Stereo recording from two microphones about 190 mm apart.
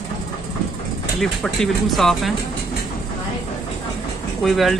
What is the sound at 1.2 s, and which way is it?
Speech, centre (ahead or behind).